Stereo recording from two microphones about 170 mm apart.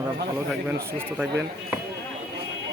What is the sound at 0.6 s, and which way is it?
Speech, 10° right (ahead or behind).